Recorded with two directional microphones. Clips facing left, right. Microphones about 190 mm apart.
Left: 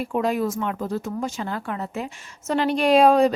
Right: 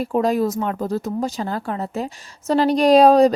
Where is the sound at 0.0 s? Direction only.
40° right (ahead or behind).